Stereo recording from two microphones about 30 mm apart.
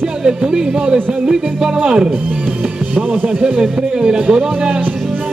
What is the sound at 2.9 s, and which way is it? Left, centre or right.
Speech, right.